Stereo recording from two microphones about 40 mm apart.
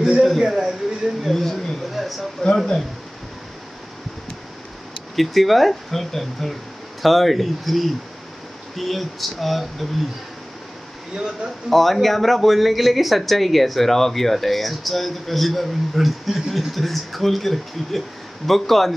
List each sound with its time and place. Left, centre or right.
0.4 s a man's voice: centre
1.2 s speech: centre
2.4 s speech: centre
5.1 s speech: centre
11.1 s a man's voice: centre
11.7 s speech: centre